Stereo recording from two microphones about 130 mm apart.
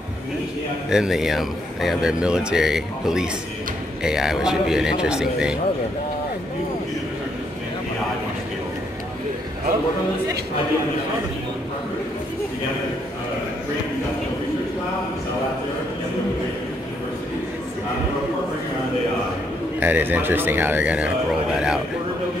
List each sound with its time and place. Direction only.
0.8 s speech: 5° right (ahead or behind)
19.8 s a man's voice: 15° right (ahead or behind)